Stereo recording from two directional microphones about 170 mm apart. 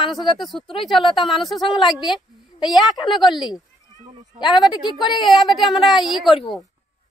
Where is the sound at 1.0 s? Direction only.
30° left (ahead or behind).